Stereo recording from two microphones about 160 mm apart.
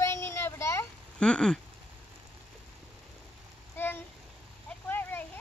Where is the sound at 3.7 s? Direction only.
15° left (ahead or behind).